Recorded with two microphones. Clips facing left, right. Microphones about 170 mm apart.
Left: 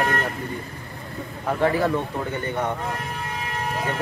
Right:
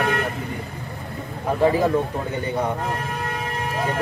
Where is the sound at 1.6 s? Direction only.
15° right (ahead or behind).